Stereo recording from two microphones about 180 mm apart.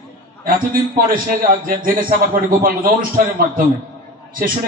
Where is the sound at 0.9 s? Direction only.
50° right (ahead or behind).